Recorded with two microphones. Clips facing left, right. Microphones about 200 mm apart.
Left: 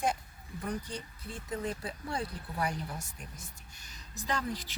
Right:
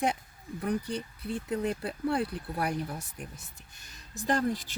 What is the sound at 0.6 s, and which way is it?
Speech, 65° right (ahead or behind).